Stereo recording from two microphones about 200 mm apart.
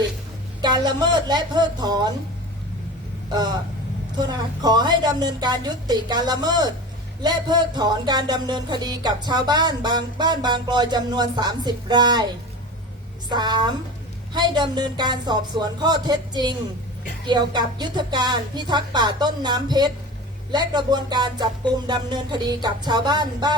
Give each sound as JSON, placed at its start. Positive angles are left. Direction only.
{"t": 0.6, "sound": "music", "side_deg": -20}
{"t": 4.2, "sound": "music", "side_deg": -20}
{"t": 13.3, "sound": "music", "side_deg": -20}